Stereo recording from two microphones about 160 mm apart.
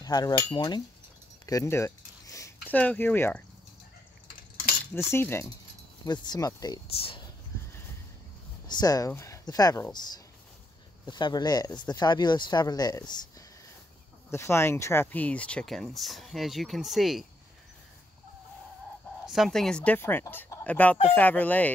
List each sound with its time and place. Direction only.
0.0 s speech: 25° left (ahead or behind)
1.4 s a sound: 20° left (ahead or behind)
4.9 s speech: 15° left (ahead or behind)
6.0 s speech: 25° left (ahead or behind)
6.9 s speech: 35° left (ahead or behind)
8.6 s speech: 25° left (ahead or behind)
11.1 s speech: 30° left (ahead or behind)
14.3 s speech: 15° left (ahead or behind); by 17.3 s centre (ahead or behind)
19.2 s speech: centre (ahead or behind)